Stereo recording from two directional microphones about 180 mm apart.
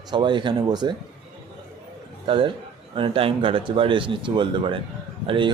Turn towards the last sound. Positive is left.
turn(degrees=-30)  # may be behind; listen again after turning